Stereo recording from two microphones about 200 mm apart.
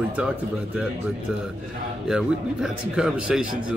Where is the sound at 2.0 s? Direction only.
5° right (ahead or behind).